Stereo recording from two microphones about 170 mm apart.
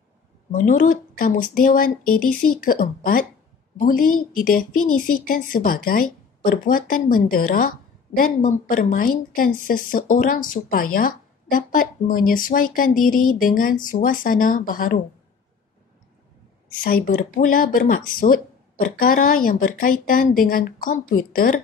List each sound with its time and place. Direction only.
0.5 s a woman's voice: 50° left (ahead or behind)
16.8 s speech: 55° left (ahead or behind)